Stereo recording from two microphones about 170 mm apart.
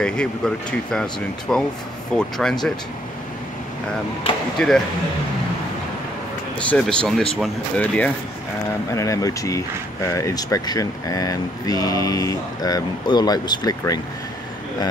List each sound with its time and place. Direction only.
0.0 s speech: 5° left (ahead or behind)
4.6 s speech: centre (ahead or behind)
6.7 s speech: 5° left (ahead or behind)
8.9 s speech: 20° left (ahead or behind)